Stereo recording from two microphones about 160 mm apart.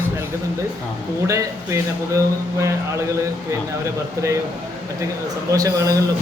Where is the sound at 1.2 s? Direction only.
20° right (ahead or behind).